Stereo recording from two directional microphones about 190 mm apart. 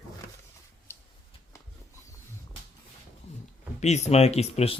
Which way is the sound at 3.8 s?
35° left (ahead or behind).